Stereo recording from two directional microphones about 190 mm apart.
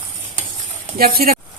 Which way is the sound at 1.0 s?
50° right (ahead or behind).